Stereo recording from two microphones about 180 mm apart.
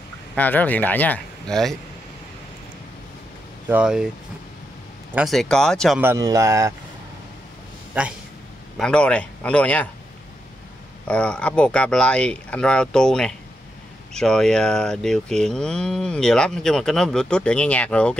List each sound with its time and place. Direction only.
0.4 s speech: 10° left (ahead or behind)
3.6 s speech: 5° right (ahead or behind)
5.1 s speech: centre (ahead or behind)
5.9 s speech: 15° right (ahead or behind)
8.7 s speech: 5° left (ahead or behind)
11.1 s speech: 5° left (ahead or behind)